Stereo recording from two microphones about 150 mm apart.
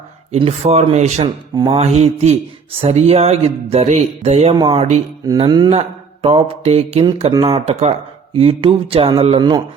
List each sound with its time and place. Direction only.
0.3 s speech: 40° right (ahead or behind)
1.2 s mantra: 30° right (ahead or behind)
1.8 s speech: 45° right (ahead or behind)
4.5 s mantra: 30° right (ahead or behind)
4.8 s speech: 50° right (ahead or behind)
5.2 s speech: 25° right (ahead or behind)
6.2 s mantra: 40° right (ahead or behind)
7.4 s speech: 40° right (ahead or behind)
8.4 s mantra: 40° right (ahead or behind)